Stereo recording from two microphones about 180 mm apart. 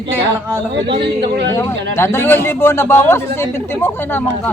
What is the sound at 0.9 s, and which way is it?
Speech, 30° right (ahead or behind).